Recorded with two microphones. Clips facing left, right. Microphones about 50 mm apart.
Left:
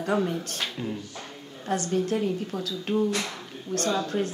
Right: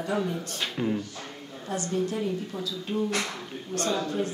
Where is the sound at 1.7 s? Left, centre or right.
Left.